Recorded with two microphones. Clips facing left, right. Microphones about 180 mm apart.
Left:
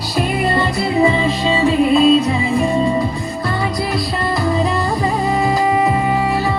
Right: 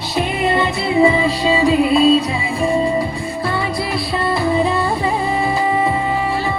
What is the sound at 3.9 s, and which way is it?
Music, 25° right (ahead or behind).